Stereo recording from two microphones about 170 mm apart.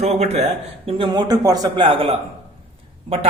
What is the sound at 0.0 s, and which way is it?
A man's voice, 40° right (ahead or behind).